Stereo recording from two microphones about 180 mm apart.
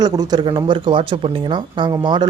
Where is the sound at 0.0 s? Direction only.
25° right (ahead or behind).